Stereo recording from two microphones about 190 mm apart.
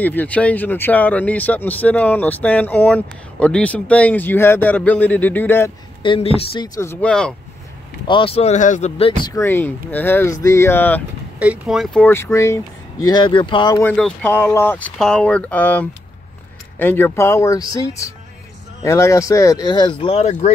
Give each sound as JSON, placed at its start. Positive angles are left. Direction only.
{"t": 0.0, "sound": "speech", "side_deg": 10}
{"t": 6.0, "sound": "speech", "side_deg": 30}
{"t": 8.1, "sound": "speech", "side_deg": 30}
{"t": 9.2, "sound": "speech", "side_deg": 15}
{"t": 11.3, "sound": "speech", "side_deg": -5}
{"t": 13.8, "sound": "speech", "side_deg": 5}